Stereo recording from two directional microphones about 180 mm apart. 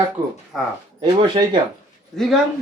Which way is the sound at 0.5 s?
Centre (ahead or behind).